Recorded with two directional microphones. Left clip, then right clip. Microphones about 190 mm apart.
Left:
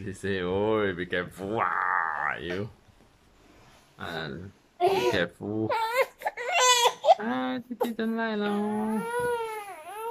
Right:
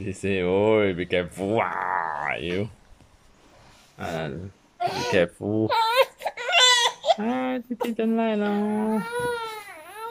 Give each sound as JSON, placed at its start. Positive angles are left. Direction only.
{"t": 0.0, "sound": "speech", "side_deg": -10}
{"t": 4.0, "sound": "speech", "side_deg": -10}
{"t": 4.7, "sound": "speech", "side_deg": 20}
{"t": 5.1, "sound": "speech", "side_deg": -10}
{"t": 5.7, "sound": "baby cry", "side_deg": 0}
{"t": 7.2, "sound": "speech", "side_deg": -10}
{"t": 8.9, "sound": "baby cry", "side_deg": 10}